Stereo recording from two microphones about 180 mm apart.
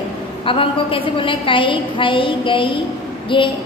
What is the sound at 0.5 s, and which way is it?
A woman's voice, 30° left (ahead or behind).